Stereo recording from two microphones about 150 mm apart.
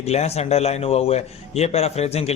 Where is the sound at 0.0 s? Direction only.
45° left (ahead or behind).